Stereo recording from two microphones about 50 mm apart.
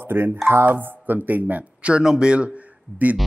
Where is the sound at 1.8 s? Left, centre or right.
Centre.